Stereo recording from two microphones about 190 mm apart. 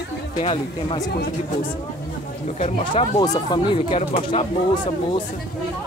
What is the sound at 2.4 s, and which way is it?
Speech, 35° left (ahead or behind).